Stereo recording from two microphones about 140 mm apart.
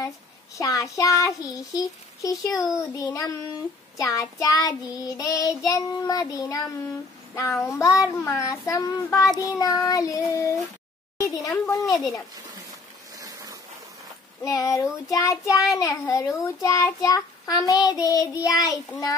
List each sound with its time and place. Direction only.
0.6 s child singing: 25° left (ahead or behind)
11.1 s a woman's voice: 25° left (ahead or behind)
11.7 s child singing: 25° left (ahead or behind)
13.2 s a sound: 25° right (ahead or behind)
14.4 s child singing: 25° left (ahead or behind)